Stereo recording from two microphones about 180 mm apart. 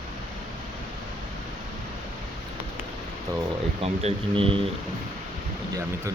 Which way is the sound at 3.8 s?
35° right (ahead or behind).